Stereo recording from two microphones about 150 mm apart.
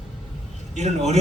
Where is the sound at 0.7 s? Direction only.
50° right (ahead or behind).